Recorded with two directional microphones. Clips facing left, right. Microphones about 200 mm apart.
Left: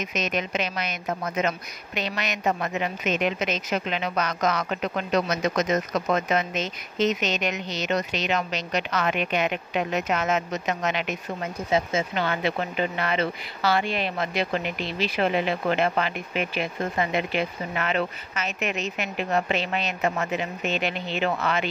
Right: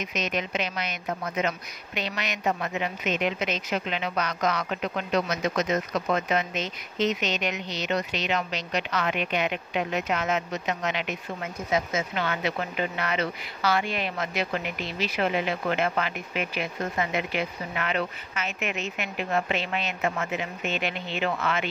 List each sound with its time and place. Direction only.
0.0 s speech: 45° left (ahead or behind)
2.0 s speech: 45° left (ahead or behind)
11.7 s speech: 30° left (ahead or behind)